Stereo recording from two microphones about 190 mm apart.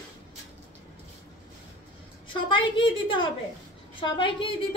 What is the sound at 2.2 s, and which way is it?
A woman's voice, 25° left (ahead or behind).